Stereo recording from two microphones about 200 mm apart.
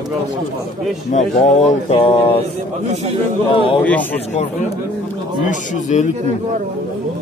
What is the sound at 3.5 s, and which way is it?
Speech, 25° left (ahead or behind).